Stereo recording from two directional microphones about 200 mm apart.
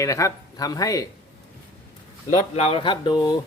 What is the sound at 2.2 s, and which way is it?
Speech, 35° left (ahead or behind).